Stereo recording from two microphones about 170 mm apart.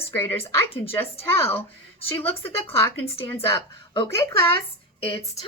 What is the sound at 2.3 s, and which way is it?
Speech, 35° left (ahead or behind).